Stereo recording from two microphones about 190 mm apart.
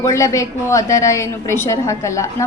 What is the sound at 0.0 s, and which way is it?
A woman's voice, 15° left (ahead or behind).